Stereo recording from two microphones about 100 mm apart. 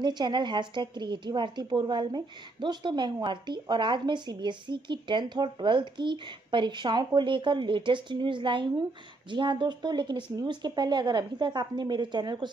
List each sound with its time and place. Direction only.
0.0 s speech: 50° right (ahead or behind)